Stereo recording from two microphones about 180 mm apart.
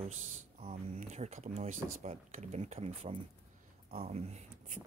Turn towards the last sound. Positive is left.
turn(degrees=-40)  # may be behind; listen again after turning